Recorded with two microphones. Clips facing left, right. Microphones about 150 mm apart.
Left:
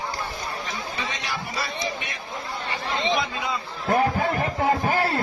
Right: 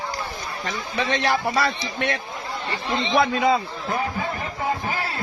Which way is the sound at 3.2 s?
75° right (ahead or behind).